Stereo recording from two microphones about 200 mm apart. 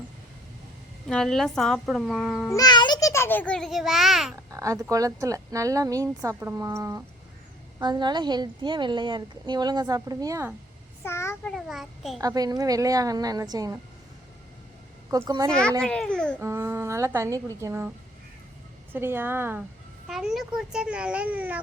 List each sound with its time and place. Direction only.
1.0 s a child's voice: 5° left (ahead or behind)
2.6 s a child's voice: 20° left (ahead or behind); by 4.4 s centre (ahead or behind)
4.5 s a woman's voice: 15° right (ahead or behind)
11.0 s child singing: 15° left (ahead or behind)
11.5 s a child's voice: centre (ahead or behind)
12.2 s a woman's voice: 20° right (ahead or behind)
15.1 s a woman's voice: 15° right (ahead or behind)
15.8 s a child's voice: 5° left (ahead or behind)
16.4 s a woman's voice: 15° right (ahead or behind)
18.9 s a woman's voice: 10° right (ahead or behind)